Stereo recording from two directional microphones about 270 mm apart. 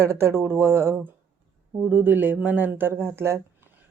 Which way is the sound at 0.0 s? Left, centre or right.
Centre.